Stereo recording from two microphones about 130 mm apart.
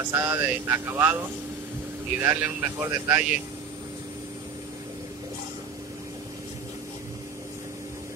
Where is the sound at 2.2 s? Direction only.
20° right (ahead or behind).